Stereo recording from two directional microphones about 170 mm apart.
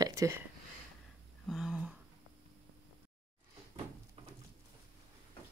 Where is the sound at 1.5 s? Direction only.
5° right (ahead or behind).